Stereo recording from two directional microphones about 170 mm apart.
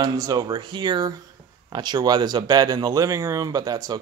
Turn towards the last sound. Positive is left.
turn(degrees=-20)  # may be behind; listen again after turning